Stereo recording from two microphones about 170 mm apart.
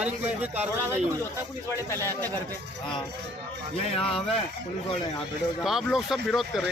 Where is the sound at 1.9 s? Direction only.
15° left (ahead or behind).